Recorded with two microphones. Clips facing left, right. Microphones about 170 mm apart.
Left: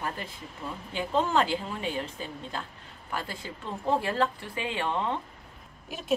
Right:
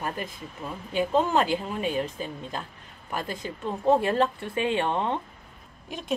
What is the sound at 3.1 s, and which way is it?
Speech, 20° right (ahead or behind).